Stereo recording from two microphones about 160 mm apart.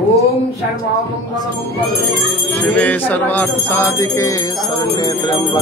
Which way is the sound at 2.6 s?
10° left (ahead or behind).